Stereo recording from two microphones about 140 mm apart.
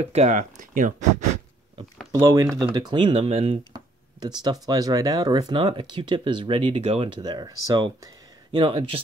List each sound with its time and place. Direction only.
0.0 s speech: 50° right (ahead or behind); by 1.0 s 65° right (ahead or behind)
2.1 s speech: 25° right (ahead or behind); by 3.5 s 45° right (ahead or behind)
3.7 s speech: 30° right (ahead or behind)
7.2 s speech: 30° right (ahead or behind)